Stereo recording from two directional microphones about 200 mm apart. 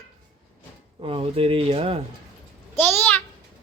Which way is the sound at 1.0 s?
30° right (ahead or behind).